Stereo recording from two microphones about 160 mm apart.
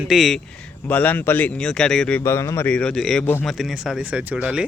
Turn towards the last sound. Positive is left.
turn(degrees=-10)  # may be behind; listen again after turning